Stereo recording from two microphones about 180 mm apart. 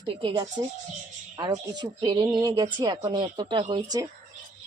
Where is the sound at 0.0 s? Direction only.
30° right (ahead or behind).